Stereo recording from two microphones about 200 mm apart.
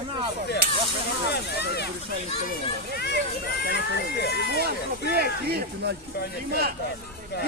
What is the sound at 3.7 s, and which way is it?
Speech, 55° left (ahead or behind).